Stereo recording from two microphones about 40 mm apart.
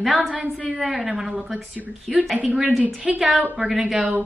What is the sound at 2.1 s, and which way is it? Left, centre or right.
Speech, right.